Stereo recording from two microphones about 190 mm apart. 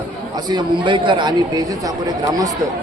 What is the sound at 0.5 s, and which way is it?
A man's voice, 25° right (ahead or behind).